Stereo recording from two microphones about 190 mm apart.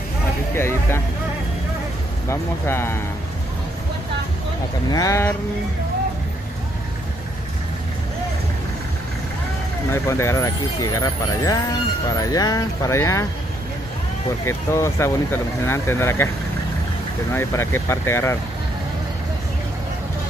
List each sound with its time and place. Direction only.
0.6 s speech: 15° left (ahead or behind)
2.2 s speech: 15° left (ahead or behind)
4.9 s speech: 15° left (ahead or behind)
10.0 s speech: 15° left (ahead or behind)
14.4 s speech: 15° left (ahead or behind)
17.3 s speech: 15° left (ahead or behind)